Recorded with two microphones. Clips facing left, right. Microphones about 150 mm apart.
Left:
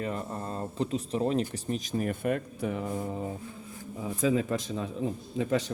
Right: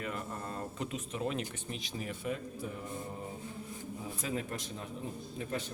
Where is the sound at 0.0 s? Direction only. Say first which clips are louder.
Left 6 dB; 35° left (ahead or behind); by 3.1 s 90° left.